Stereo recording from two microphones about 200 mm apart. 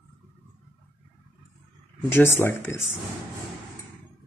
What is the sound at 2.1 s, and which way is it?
Speech, 10° left (ahead or behind).